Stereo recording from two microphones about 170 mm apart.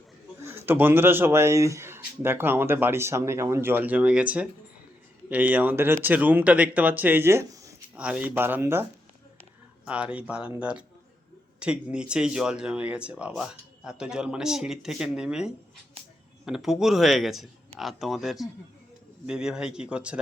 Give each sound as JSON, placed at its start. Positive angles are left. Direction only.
{"t": 0.4, "sound": "speech", "side_deg": -15}
{"t": 7.9, "sound": "speech", "side_deg": -5}